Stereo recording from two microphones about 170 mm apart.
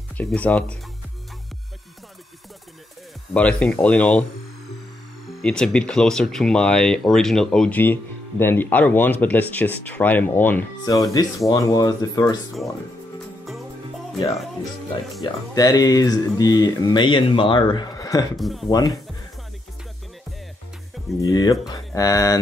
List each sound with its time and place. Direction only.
0.2 s speech: 10° left (ahead or behind)
3.3 s speech: 5° left (ahead or behind)
5.3 s speech: 5° left (ahead or behind)
10.9 s speech: 20° left (ahead or behind)
13.5 s music: centre (ahead or behind)
15.5 s speech: 20° left (ahead or behind)
18.3 s speech: centre (ahead or behind)
18.7 s speech: 25° left (ahead or behind)
21.2 s speech: 20° left (ahead or behind)